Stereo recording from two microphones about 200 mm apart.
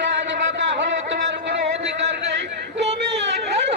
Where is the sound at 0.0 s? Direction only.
65° right (ahead or behind).